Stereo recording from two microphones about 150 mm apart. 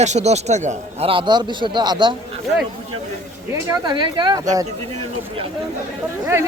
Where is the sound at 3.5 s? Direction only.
25° right (ahead or behind).